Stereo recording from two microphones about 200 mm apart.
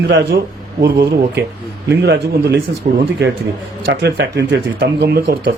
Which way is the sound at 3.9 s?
60° right (ahead or behind).